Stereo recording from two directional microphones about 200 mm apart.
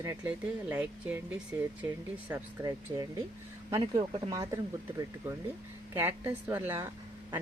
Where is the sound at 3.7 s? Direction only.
15° right (ahead or behind).